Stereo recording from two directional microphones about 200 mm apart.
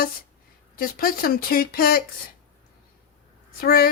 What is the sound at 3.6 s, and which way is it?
Speech, 50° left (ahead or behind).